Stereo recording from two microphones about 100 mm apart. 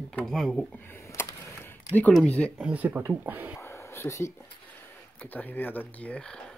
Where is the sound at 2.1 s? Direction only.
10° left (ahead or behind).